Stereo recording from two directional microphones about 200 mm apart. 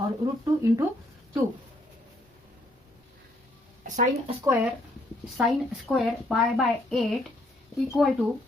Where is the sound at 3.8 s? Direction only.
40° right (ahead or behind).